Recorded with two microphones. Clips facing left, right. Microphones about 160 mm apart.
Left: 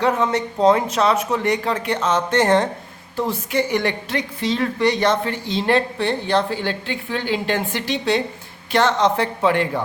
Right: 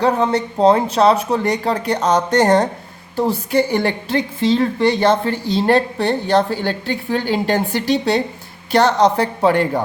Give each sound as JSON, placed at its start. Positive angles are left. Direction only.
{"t": 0.0, "sound": "a woman's voice", "side_deg": -35}